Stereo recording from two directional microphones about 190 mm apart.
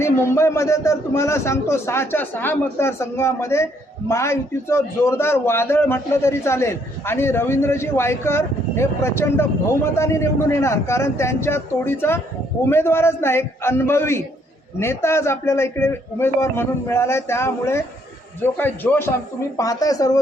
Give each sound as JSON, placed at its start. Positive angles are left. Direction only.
{"t": 0.0, "sound": "a man's voice", "side_deg": 15}